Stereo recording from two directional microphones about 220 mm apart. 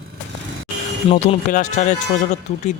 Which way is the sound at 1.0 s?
30° left (ahead or behind).